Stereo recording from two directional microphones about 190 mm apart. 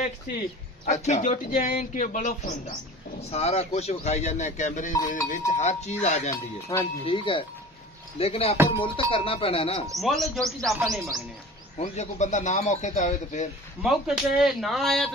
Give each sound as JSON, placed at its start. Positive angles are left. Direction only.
{"t": 0.8, "sound": "speech", "side_deg": 35}
{"t": 5.0, "sound": "cowbell", "side_deg": 45}
{"t": 5.5, "sound": "speech", "side_deg": 35}
{"t": 6.3, "sound": "speech", "side_deg": 15}
{"t": 7.1, "sound": "speech", "side_deg": 25}
{"t": 9.9, "sound": "speech", "side_deg": 0}
{"t": 11.8, "sound": "speech", "side_deg": 40}
{"t": 13.8, "sound": "speech", "side_deg": 0}